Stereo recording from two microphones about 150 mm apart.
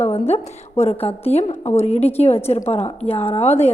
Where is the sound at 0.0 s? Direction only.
45° left (ahead or behind).